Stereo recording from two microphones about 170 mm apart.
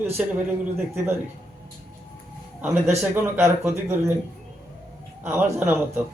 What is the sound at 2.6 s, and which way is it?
A man's voice, 10° right (ahead or behind).